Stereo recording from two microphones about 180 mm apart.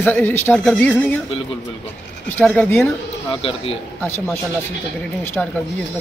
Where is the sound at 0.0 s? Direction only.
10° left (ahead or behind).